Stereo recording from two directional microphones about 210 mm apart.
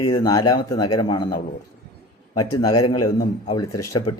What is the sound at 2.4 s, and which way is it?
Speech, 15° left (ahead or behind).